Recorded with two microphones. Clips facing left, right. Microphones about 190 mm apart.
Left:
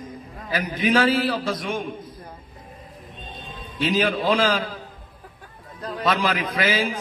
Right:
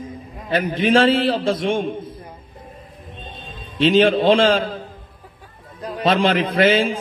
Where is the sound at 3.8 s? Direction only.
25° right (ahead or behind).